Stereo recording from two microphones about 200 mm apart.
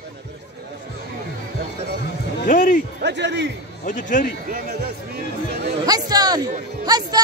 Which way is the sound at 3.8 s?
40° left (ahead or behind).